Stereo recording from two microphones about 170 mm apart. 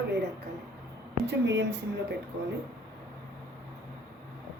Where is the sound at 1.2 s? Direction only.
90° right.